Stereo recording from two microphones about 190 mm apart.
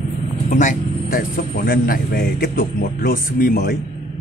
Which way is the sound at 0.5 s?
45° left (ahead or behind).